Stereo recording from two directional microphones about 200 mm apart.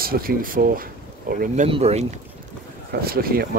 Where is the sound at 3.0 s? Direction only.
50° right (ahead or behind).